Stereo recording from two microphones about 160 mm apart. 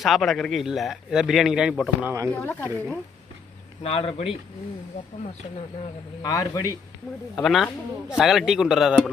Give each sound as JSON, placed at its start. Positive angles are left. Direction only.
{"t": 0.0, "sound": "a man's voice", "side_deg": 0}
{"t": 2.3, "sound": "speech", "side_deg": 10}
{"t": 3.8, "sound": "speech", "side_deg": 40}
{"t": 6.2, "sound": "a man's voice", "side_deg": 20}
{"t": 7.3, "sound": "a man's voice", "side_deg": 0}